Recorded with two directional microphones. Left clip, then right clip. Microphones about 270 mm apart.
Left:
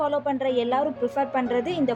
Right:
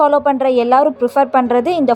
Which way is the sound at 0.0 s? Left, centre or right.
Right.